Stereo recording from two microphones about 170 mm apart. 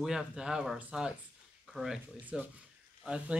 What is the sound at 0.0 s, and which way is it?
Speech, 5° right (ahead or behind).